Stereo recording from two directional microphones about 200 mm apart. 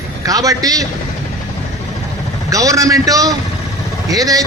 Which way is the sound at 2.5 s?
15° right (ahead or behind).